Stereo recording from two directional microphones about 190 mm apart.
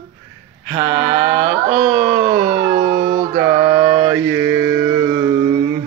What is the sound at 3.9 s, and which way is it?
Mantra, 40° right (ahead or behind).